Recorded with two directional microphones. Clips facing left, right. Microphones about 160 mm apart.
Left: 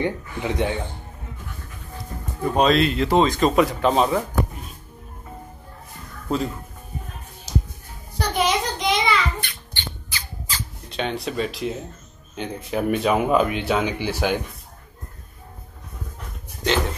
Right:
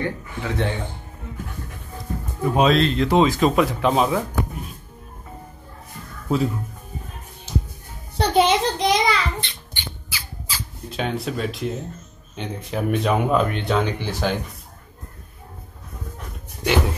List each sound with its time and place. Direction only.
0.0 s speech: 20° left (ahead or behind)
2.4 s speech: centre (ahead or behind)
6.2 s speech: 5° right (ahead or behind)
7.5 s music: 40° left (ahead or behind)
8.2 s a sound: 30° right (ahead or behind)
9.4 s rodents: 25° right (ahead or behind)
9.8 s squawk: 10° right (ahead or behind)
12.4 s speech: centre (ahead or behind)